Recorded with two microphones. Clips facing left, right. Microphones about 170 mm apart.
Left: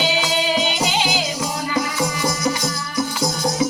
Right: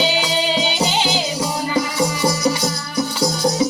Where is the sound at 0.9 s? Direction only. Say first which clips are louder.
Right 1 dB; 30° right (ahead or behind).